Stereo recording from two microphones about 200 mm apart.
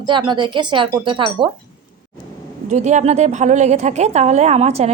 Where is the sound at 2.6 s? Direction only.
35° right (ahead or behind).